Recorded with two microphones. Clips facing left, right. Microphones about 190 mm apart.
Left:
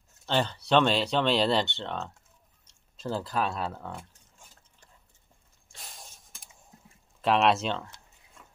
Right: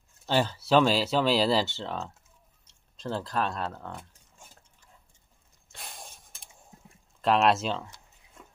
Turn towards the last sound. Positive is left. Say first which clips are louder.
# even
turn(degrees=0)  # may be behind; listen again after turning